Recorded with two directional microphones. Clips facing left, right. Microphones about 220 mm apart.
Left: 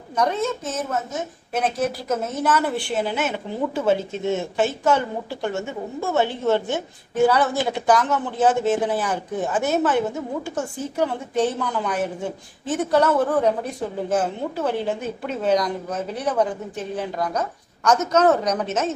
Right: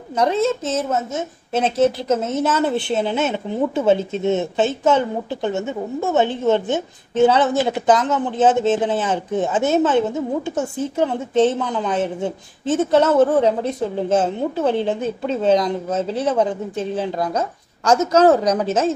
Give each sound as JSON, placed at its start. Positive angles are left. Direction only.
{"t": 0.1, "sound": "a woman's voice", "side_deg": -25}